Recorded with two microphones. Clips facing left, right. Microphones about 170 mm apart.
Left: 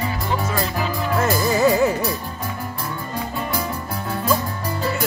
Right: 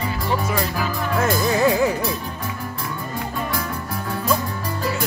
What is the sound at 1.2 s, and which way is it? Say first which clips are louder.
Music: even; centre (ahead or behind).